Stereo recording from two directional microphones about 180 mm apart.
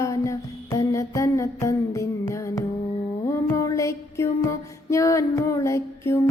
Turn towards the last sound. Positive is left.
turn(degrees=15)  # may be behind; listen again after turning